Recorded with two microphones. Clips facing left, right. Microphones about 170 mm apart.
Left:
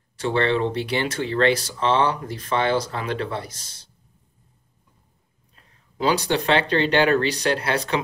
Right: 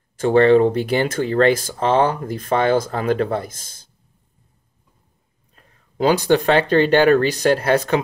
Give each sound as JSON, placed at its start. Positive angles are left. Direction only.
{"t": 0.2, "sound": "speech", "side_deg": -45}
{"t": 5.6, "sound": "speech", "side_deg": -45}